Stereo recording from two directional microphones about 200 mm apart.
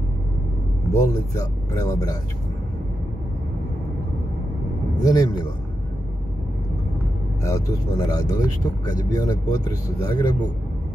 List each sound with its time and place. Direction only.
0.9 s speech: 15° left (ahead or behind)
5.0 s speech: 15° left (ahead or behind)
7.4 s speech: 15° left (ahead or behind)